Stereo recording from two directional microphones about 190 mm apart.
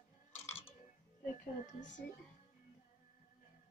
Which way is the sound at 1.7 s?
40° left (ahead or behind).